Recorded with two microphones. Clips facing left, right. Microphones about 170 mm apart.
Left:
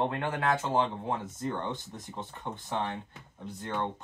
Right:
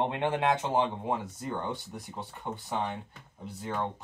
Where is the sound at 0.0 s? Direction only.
20° right (ahead or behind).